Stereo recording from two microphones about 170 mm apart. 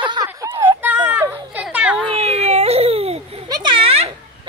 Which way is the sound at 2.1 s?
40° right (ahead or behind).